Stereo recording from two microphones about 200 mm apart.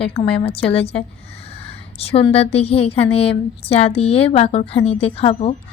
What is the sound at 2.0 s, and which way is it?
A woman's voice, 30° left (ahead or behind).